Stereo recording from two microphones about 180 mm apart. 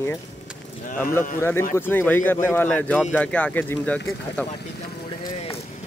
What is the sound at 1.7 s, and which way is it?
Speech, 10° left (ahead or behind).